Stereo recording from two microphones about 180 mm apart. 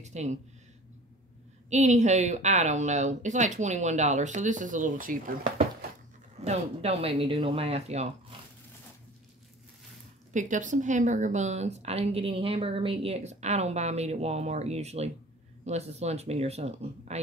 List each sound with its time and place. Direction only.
0.0 s speech: 40° right (ahead or behind)
1.7 s speech: 40° right (ahead or behind)
6.4 s speech: 35° right (ahead or behind)
10.3 s speech: 45° right (ahead or behind)